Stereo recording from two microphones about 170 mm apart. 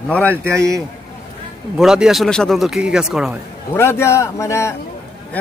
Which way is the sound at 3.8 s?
15° left (ahead or behind).